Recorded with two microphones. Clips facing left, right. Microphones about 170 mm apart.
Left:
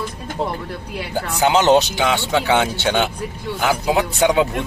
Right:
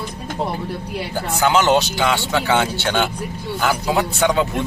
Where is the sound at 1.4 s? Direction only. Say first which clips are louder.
Left 2 dB; 20° left (ahead or behind).